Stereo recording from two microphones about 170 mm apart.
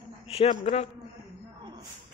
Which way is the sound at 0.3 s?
40° left (ahead or behind).